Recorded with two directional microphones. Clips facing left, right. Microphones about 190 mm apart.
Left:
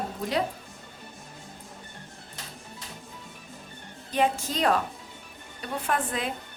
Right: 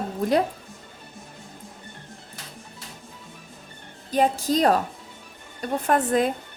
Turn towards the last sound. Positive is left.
turn(degrees=-45)  # may be behind; listen again after turning